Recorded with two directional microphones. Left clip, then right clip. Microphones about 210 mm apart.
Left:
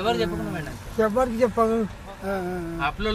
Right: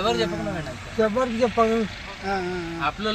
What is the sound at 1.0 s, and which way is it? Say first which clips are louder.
Speech: even; 25° left (ahead or behind).